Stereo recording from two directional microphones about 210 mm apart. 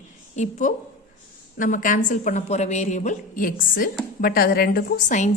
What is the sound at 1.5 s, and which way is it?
A woman's voice, 40° left (ahead or behind).